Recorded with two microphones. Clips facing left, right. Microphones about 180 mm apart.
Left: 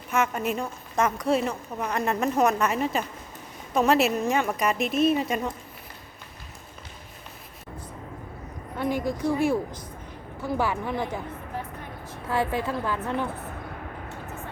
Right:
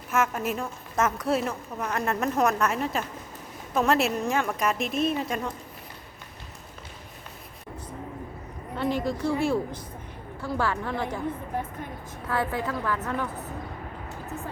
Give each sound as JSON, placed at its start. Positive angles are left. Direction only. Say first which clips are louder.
{"t": 0.1, "sound": "a woman's voice", "louder": "left 1 dB", "side_deg": 0}
{"t": 8.8, "sound": "a woman's voice", "louder": "even", "side_deg": 15}
{"t": 12.3, "sound": "a woman's voice", "louder": "left 2 dB", "side_deg": 20}